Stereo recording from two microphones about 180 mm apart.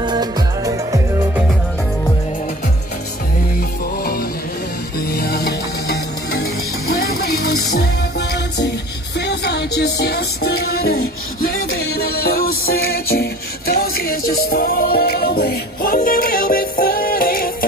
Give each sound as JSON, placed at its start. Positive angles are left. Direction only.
{"t": 0.0, "sound": "music", "side_deg": -25}
{"t": 3.5, "sound": "music", "side_deg": 55}